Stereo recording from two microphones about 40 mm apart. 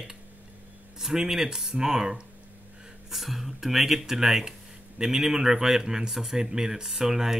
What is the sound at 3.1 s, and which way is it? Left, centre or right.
Speech, centre.